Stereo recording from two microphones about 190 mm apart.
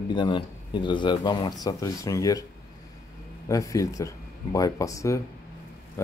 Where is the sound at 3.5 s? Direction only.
15° left (ahead or behind).